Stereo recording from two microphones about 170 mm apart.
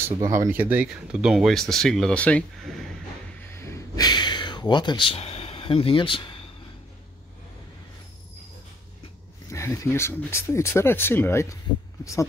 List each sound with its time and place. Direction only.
0.2 s speech: 15° right (ahead or behind); by 2.9 s 5° left (ahead or behind)
3.5 s a sound: 15° left (ahead or behind)
9.5 s speech: 15° left (ahead or behind)